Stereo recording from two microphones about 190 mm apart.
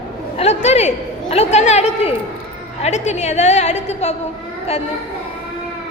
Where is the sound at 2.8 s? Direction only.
35° left (ahead or behind).